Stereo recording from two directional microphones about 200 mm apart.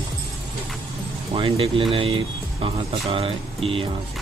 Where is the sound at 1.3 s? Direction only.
25° right (ahead or behind).